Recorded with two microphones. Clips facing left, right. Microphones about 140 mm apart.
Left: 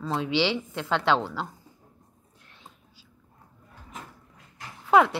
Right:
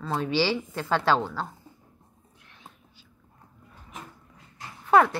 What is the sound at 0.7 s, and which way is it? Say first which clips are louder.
Speech: right 1 dB; 5° right (ahead or behind).